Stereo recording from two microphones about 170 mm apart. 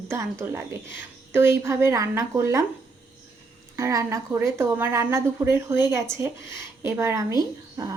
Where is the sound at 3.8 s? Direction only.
20° right (ahead or behind).